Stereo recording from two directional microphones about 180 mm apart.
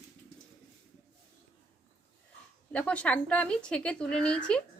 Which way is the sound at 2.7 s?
5° left (ahead or behind).